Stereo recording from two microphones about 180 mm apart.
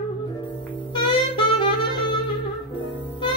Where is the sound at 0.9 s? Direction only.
25° left (ahead or behind).